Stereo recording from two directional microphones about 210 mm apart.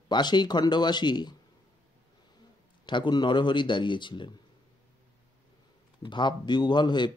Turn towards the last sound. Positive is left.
turn(degrees=20)  # may be behind; listen again after turning